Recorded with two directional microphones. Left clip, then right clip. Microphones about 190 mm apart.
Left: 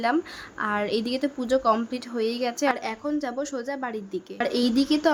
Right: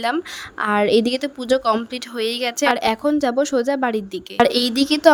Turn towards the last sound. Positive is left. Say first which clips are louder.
# right 8 dB
turn(degrees=-40)  # may be behind; listen again after turning